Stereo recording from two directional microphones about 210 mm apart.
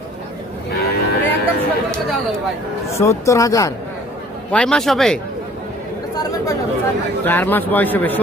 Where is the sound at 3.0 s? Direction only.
15° left (ahead or behind).